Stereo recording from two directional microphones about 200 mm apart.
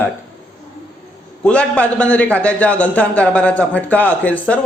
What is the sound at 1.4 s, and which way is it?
A man's voice, 5° left (ahead or behind).